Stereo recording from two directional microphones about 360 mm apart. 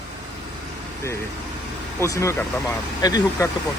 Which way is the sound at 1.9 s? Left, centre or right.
Centre.